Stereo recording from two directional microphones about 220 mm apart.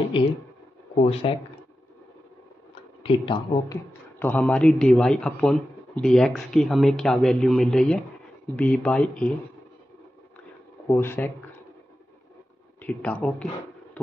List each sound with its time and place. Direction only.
0.9 s speech: 30° left (ahead or behind)
3.0 s speech: 25° left (ahead or behind); by 9.3 s 5° left (ahead or behind)
10.9 s speech: 10° left (ahead or behind)
12.8 s speech: 5° left (ahead or behind)